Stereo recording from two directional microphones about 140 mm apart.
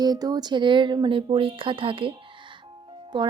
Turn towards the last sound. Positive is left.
turn(degrees=-35)  # may be behind; listen again after turning